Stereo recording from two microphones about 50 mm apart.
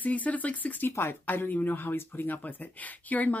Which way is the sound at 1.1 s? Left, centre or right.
Left.